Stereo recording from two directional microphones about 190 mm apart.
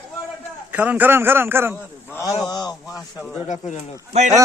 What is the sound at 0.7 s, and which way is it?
Speech, 10° right (ahead or behind).